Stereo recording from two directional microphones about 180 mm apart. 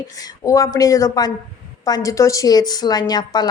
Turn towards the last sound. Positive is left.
turn(degrees=20)  # may be behind; listen again after turning